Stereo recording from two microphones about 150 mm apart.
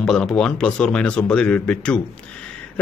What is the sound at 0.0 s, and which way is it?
Speech, 5° left (ahead or behind).